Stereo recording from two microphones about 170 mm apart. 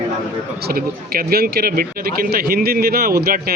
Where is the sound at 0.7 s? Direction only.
65° right (ahead or behind).